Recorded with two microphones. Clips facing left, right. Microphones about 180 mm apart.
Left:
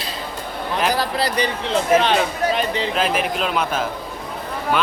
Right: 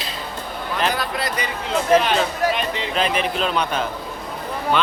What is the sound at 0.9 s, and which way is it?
Speech, 35° left (ahead or behind).